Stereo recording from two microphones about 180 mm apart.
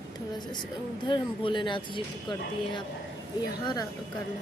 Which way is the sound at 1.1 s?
25° left (ahead or behind).